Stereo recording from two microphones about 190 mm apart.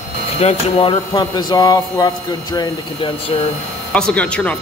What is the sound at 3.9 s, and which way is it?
Speech, 5° left (ahead or behind).